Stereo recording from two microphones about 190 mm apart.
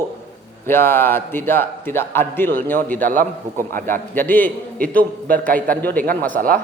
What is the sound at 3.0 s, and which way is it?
Speech, 45° right (ahead or behind).